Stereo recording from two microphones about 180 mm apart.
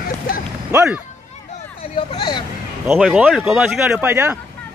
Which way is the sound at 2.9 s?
5° right (ahead or behind).